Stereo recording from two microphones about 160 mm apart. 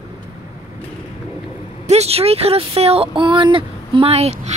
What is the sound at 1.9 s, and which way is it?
Speech, 40° right (ahead or behind).